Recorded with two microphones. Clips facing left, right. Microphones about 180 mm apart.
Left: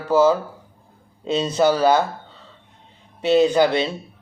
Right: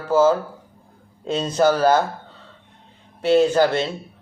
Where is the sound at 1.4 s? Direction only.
10° left (ahead or behind).